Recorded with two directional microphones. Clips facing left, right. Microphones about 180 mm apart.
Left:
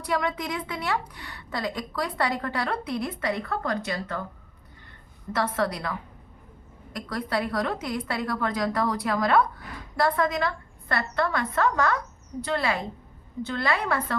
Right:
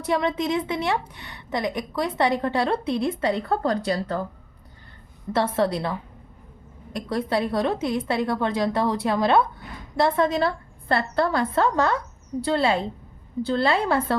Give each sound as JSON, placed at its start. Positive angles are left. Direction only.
{"t": 0.0, "sound": "a woman's voice", "side_deg": -25}
{"t": 5.3, "sound": "a woman's voice", "side_deg": -30}